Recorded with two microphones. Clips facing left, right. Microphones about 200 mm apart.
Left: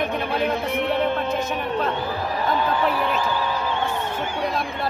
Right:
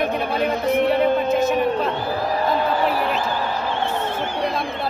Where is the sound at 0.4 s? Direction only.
40° right (ahead or behind).